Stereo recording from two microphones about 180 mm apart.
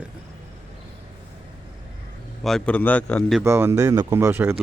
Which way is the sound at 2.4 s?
5° left (ahead or behind).